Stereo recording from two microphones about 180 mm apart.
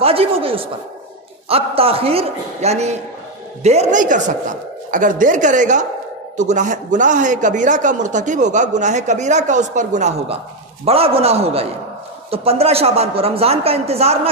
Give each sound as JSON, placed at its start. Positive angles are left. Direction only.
{"t": 0.0, "sound": "a woman's voice", "side_deg": -30}